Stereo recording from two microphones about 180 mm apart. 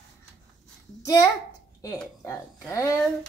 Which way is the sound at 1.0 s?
20° left (ahead or behind).